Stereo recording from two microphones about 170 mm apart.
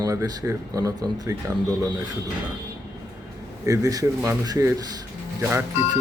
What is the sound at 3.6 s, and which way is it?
Speech, 20° right (ahead or behind).